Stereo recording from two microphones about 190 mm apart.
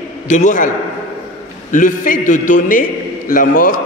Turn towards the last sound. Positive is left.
turn(degrees=45)  # may be behind; listen again after turning